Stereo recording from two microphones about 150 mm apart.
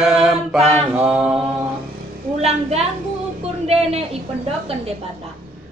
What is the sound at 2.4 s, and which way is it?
Speech, 45° right (ahead or behind).